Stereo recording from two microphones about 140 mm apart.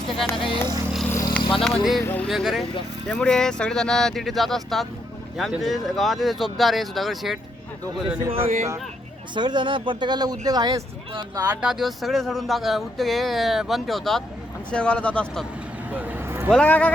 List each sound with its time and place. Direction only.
0.1 s speech: centre (ahead or behind)
1.1 s vehicle: 20° left (ahead or behind)
1.4 s a sound: 35° left (ahead or behind)
1.6 s speech: centre (ahead or behind)
2.0 s speech: 10° left (ahead or behind)
2.3 s speech: centre (ahead or behind)
8.4 s a man's voice: 55° right (ahead or behind)
9.3 s speech: 35° right (ahead or behind)
11.6 s speech: centre (ahead or behind)
15.9 s a sound: 10° right (ahead or behind)
16.5 s speech: 10° left (ahead or behind)